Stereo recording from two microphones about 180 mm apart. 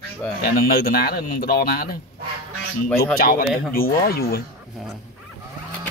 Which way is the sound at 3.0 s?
55° left (ahead or behind).